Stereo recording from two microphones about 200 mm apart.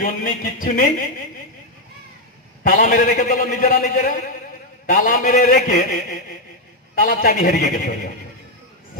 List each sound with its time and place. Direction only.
0.0 s a man's voice: 45° left (ahead or behind)
2.7 s a man's voice: 45° left (ahead or behind)